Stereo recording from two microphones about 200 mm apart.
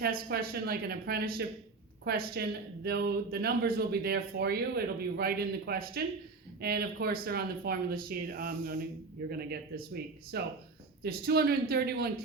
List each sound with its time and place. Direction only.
0.0 s speech: 50° right (ahead or behind)